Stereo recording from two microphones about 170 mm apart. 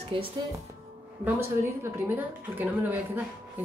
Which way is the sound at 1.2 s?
15° right (ahead or behind).